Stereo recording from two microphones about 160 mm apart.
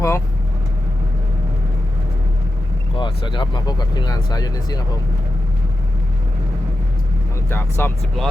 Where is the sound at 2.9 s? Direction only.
30° left (ahead or behind).